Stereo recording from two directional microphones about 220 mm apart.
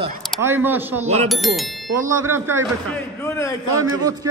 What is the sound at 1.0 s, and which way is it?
Speech, 30° right (ahead or behind).